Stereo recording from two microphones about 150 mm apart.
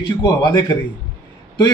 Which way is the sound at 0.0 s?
30° left (ahead or behind).